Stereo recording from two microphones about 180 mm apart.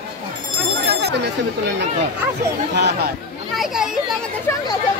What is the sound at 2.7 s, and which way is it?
Speech, 70° right (ahead or behind).